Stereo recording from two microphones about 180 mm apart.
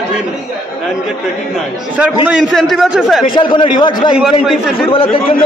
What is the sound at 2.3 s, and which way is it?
Speech, centre (ahead or behind).